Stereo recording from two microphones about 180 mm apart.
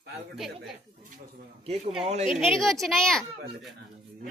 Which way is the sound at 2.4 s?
Centre (ahead or behind).